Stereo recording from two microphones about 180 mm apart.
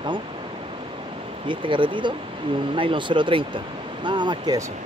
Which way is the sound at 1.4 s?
30° right (ahead or behind).